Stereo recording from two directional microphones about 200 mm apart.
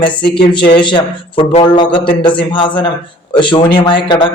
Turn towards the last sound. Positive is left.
turn(degrees=25)  # may be behind; listen again after turning